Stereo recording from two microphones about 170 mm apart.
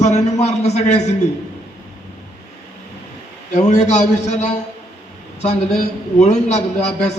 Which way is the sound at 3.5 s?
45° left (ahead or behind).